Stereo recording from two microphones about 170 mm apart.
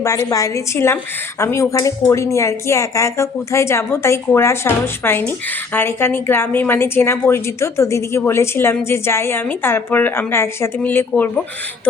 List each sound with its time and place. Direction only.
0.0 s a woman's voice: 20° left (ahead or behind)